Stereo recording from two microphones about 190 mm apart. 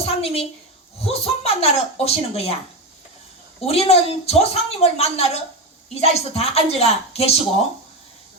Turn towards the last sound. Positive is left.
turn(degrees=35)  # may be behind; listen again after turning